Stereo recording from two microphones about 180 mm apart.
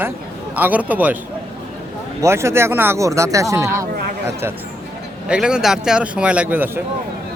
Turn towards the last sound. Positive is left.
turn(degrees=-10)  # may be behind; listen again after turning